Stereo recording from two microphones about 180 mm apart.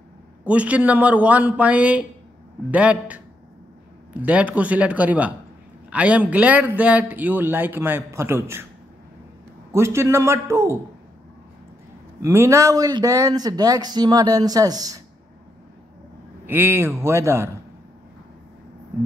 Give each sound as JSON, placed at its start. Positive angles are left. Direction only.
{"t": 0.5, "sound": "a man's voice", "side_deg": -5}
{"t": 4.2, "sound": "a man's voice", "side_deg": -10}
{"t": 9.7, "sound": "a man's voice", "side_deg": -15}
{"t": 12.2, "sound": "speech", "side_deg": -15}
{"t": 16.4, "sound": "a man's voice", "side_deg": -10}